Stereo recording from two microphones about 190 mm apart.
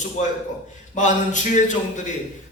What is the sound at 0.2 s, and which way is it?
A man's voice, 40° left (ahead or behind).